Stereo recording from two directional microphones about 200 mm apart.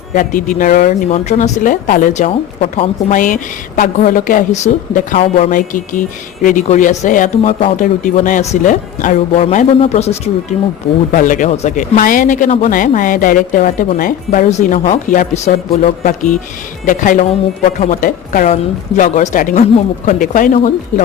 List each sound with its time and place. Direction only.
0.1 s speech: 40° left (ahead or behind)